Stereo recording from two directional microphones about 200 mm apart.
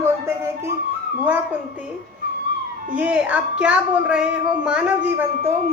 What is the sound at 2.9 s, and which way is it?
A woman's voice, 5° right (ahead or behind).